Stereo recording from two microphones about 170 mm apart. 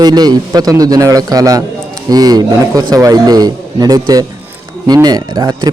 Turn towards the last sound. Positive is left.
turn(degrees=-25)  # may be behind; listen again after turning